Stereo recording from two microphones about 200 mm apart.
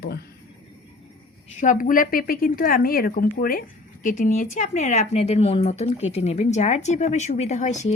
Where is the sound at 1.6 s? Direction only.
40° left (ahead or behind).